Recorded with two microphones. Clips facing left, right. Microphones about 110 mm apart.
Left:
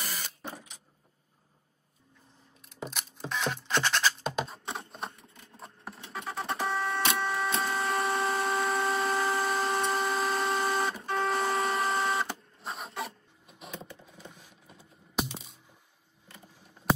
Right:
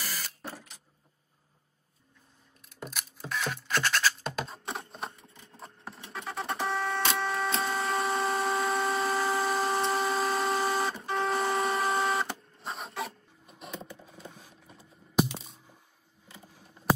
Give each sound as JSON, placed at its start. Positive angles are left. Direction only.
{"t": 0.0, "sound": "printer", "side_deg": 0}
{"t": 2.7, "sound": "music", "side_deg": 0}
{"t": 7.2, "sound": "printer", "side_deg": 0}
{"t": 14.3, "sound": "a sound", "side_deg": -30}
{"t": 14.7, "sound": "typing", "side_deg": 0}